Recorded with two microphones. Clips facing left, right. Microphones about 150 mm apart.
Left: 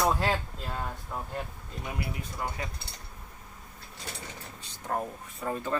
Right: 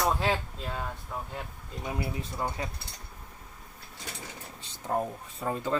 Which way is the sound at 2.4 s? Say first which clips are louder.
Right 2 dB; 25° right (ahead or behind).